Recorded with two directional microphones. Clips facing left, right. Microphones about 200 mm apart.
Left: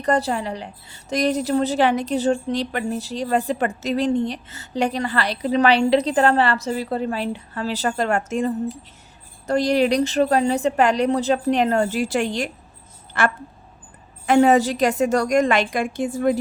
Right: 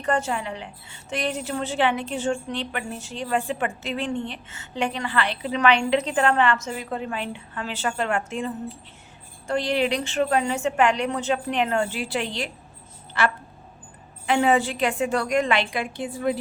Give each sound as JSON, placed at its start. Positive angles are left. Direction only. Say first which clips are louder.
{"t": 0.0, "sound": "a woman's voice", "louder": "left 4 dB", "side_deg": 35}